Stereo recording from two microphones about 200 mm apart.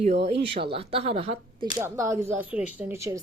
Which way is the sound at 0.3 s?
30° right (ahead or behind).